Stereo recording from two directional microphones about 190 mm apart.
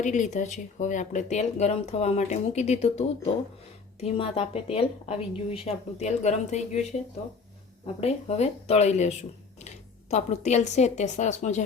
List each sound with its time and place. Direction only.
0.0 s speech: 40° left (ahead or behind)
8.0 s speech: 35° left (ahead or behind)